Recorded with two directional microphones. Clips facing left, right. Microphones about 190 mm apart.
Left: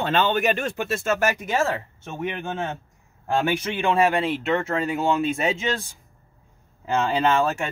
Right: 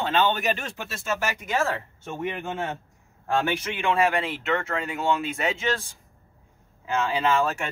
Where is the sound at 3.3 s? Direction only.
25° left (ahead or behind).